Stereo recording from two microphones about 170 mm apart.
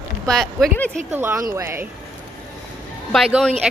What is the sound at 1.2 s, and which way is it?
Speech, 10° right (ahead or behind).